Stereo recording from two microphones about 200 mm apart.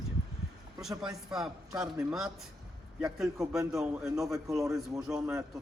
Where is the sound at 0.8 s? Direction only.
Centre (ahead or behind).